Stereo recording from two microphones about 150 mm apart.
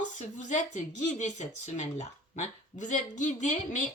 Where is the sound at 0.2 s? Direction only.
55° left (ahead or behind).